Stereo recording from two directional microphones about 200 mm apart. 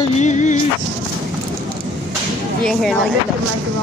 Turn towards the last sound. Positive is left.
turn(degrees=0)  # may be behind; listen again after turning